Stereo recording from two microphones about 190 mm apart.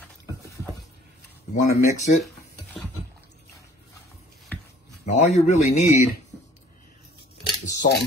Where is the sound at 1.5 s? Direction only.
40° left (ahead or behind).